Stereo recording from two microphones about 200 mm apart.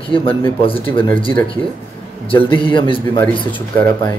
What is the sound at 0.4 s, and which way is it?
Speech, 25° left (ahead or behind).